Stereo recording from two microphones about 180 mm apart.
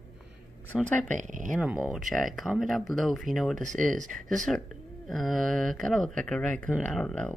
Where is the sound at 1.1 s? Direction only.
45° right (ahead or behind).